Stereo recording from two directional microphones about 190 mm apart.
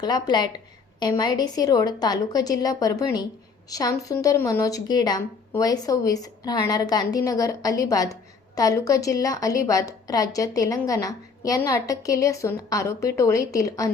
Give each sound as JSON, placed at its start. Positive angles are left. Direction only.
{"t": 0.0, "sound": "a woman's voice", "side_deg": 20}